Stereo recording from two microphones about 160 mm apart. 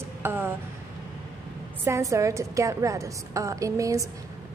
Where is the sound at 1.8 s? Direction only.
20° right (ahead or behind).